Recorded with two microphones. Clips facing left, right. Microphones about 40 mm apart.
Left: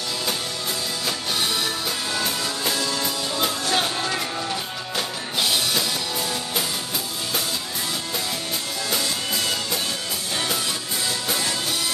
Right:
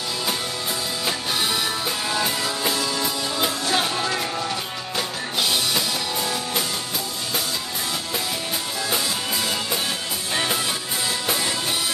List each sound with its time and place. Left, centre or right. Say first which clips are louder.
1.0 s music: right 1 dB; centre
10.3 s music: right 3 dB; right